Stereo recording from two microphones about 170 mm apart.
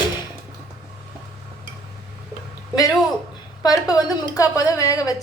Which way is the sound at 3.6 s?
20° left (ahead or behind).